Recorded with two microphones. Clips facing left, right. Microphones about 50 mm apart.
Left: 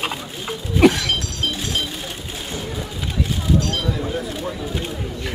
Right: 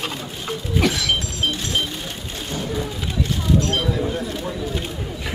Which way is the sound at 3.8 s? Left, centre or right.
Centre.